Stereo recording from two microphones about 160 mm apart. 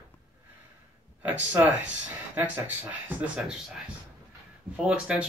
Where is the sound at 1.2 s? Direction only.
10° right (ahead or behind).